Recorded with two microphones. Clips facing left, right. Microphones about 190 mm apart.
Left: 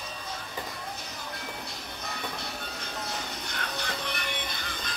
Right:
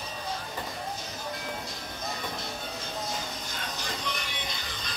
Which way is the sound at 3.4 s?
60° left (ahead or behind).